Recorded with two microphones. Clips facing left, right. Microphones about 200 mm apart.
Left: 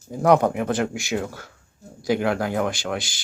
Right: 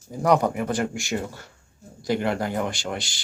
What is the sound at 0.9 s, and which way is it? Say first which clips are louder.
Speech: left 2 dB; centre (ahead or behind).